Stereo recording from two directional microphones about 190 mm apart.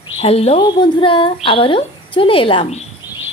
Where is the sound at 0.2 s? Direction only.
35° left (ahead or behind).